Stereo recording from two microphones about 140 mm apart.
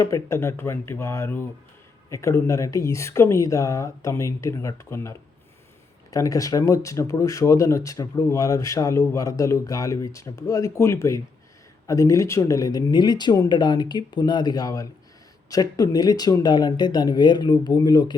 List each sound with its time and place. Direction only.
0.0 s speech: 20° left (ahead or behind)